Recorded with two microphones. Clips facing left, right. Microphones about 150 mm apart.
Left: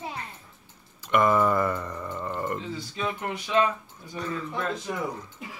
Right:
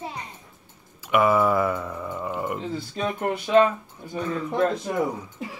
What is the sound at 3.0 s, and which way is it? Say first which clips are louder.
Speech: right 5 dB; 45° right (ahead or behind).